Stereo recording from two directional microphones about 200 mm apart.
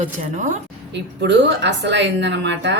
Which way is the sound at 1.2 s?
60° right (ahead or behind).